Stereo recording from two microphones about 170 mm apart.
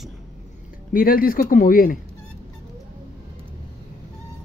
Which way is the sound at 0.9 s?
55° left (ahead or behind).